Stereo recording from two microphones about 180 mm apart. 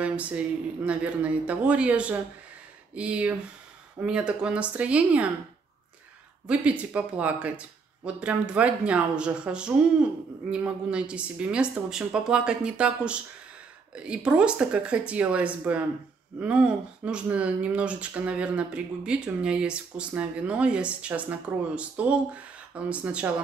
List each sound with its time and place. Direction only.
0.0 s speech: 5° right (ahead or behind)
6.4 s speech: 5° right (ahead or behind)